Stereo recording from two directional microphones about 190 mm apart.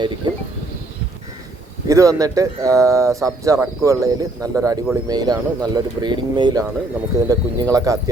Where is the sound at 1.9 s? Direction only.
15° right (ahead or behind).